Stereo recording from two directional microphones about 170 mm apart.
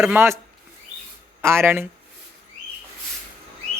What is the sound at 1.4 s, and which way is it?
Speech, 15° right (ahead or behind).